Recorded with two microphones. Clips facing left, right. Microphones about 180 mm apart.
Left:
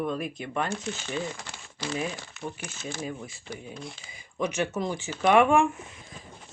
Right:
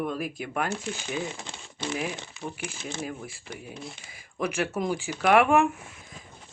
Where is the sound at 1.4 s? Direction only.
20° right (ahead or behind).